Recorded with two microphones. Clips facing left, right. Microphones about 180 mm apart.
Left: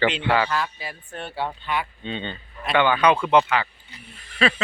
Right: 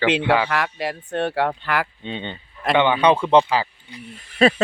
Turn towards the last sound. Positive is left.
turn(degrees=-40)  # may be behind; listen again after turning